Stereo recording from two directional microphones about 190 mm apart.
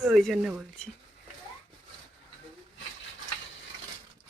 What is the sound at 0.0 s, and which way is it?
Speech, centre (ahead or behind).